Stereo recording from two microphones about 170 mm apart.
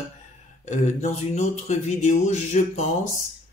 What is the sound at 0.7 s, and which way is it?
Speech, 40° left (ahead or behind).